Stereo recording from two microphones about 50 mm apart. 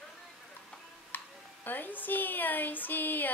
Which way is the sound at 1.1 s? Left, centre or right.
Left.